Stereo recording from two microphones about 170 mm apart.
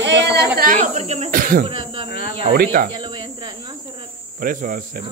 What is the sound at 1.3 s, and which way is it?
Speech, 55° right (ahead or behind).